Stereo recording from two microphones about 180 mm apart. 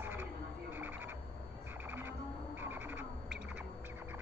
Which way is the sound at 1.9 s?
10° right (ahead or behind).